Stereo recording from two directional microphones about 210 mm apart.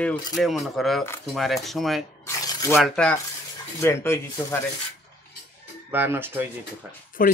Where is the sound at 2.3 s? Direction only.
15° left (ahead or behind).